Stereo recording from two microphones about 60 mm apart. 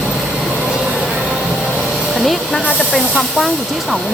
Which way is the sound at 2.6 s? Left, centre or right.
Left.